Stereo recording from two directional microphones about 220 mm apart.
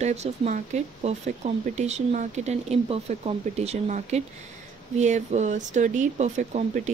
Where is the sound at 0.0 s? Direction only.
30° right (ahead or behind).